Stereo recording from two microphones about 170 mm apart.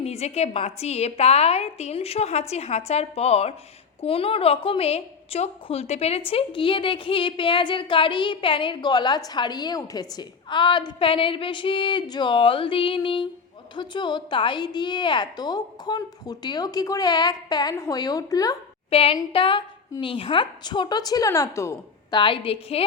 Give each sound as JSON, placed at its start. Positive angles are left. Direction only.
{"t": 0.0, "sound": "a woman's voice", "side_deg": 40}
{"t": 18.9, "sound": "a woman's voice", "side_deg": 35}
{"t": 22.2, "sound": "a woman's voice", "side_deg": 30}